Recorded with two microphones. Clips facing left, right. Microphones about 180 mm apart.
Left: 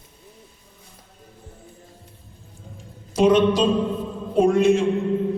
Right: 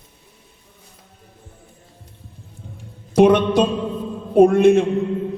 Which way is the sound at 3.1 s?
60° right (ahead or behind).